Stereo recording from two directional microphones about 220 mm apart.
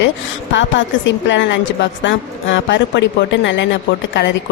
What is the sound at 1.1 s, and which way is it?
Speech, 55° left (ahead or behind).